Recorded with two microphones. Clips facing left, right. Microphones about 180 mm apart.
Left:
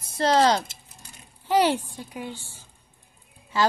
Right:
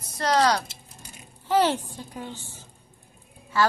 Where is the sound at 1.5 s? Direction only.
15° left (ahead or behind).